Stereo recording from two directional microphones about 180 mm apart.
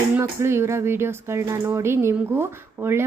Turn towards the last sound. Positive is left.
turn(degrees=-15)  # may be behind; listen again after turning